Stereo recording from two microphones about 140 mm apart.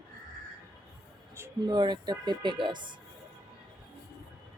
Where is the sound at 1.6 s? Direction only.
30° right (ahead or behind).